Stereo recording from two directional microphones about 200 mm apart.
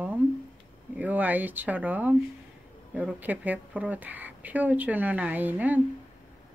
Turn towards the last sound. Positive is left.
turn(degrees=-10)  # may be behind; listen again after turning